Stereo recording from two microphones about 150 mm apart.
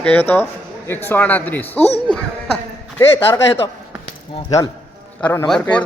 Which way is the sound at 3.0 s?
15° left (ahead or behind).